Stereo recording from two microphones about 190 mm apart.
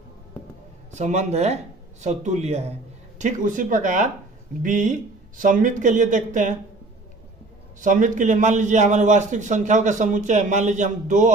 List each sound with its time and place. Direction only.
0.9 s a man's voice: 40° right (ahead or behind)
7.8 s a man's voice: 40° right (ahead or behind)